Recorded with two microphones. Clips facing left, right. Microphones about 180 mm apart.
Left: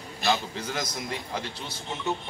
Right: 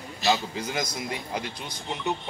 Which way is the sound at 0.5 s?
10° right (ahead or behind).